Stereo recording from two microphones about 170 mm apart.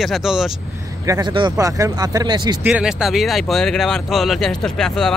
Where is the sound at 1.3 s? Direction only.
25° right (ahead or behind).